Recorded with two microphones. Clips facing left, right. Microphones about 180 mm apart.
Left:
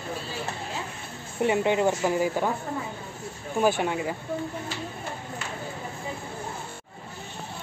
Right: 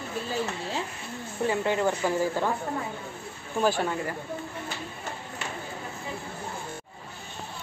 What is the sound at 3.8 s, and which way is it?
Speech, 15° left (ahead or behind).